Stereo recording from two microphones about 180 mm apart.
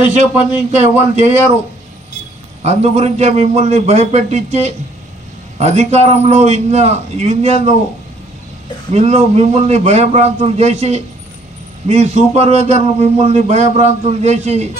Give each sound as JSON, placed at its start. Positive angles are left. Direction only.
{"t": 0.0, "sound": "a man's voice", "side_deg": -40}
{"t": 2.6, "sound": "a man's voice", "side_deg": -35}
{"t": 8.9, "sound": "a man's voice", "side_deg": -35}